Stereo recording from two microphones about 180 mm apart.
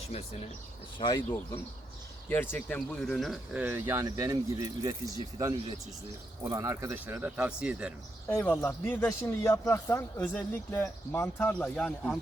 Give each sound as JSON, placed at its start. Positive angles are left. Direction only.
{"t": 0.9, "sound": "speech", "side_deg": 20}
{"t": 2.3, "sound": "speech", "side_deg": 10}
{"t": 8.4, "sound": "a man's voice", "side_deg": 10}